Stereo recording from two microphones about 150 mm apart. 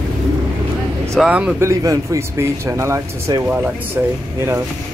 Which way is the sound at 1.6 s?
20° right (ahead or behind).